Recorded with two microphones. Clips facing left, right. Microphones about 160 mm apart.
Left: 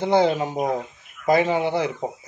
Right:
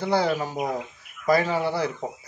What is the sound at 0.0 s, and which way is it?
Speech, 20° left (ahead or behind).